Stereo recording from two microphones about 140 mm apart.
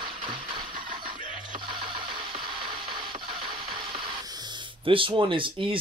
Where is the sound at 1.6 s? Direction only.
35° right (ahead or behind).